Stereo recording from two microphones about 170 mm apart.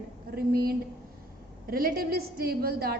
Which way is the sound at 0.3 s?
65° right (ahead or behind).